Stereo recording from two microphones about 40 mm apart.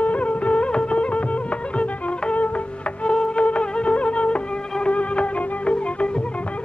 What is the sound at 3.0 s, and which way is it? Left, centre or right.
Insect, left.